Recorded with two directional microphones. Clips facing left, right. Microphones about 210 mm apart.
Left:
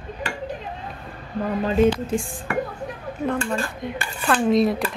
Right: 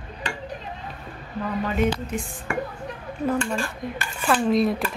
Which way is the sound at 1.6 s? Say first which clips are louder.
Left 6 dB; 30° left (ahead or behind).